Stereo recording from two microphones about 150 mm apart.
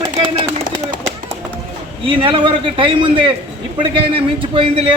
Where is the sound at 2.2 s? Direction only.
35° right (ahead or behind).